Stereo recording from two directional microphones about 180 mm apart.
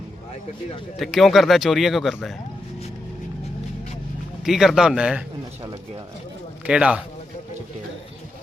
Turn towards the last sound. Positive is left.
turn(degrees=-5)  # may be behind; listen again after turning